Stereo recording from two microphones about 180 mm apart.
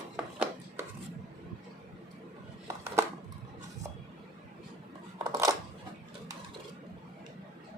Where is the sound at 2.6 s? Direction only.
15° right (ahead or behind).